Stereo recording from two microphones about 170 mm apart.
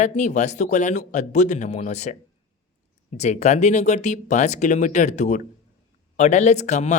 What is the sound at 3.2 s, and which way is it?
Speech, 40° left (ahead or behind).